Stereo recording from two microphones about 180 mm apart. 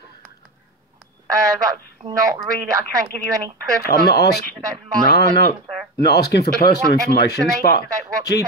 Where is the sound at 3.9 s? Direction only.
55° left (ahead or behind).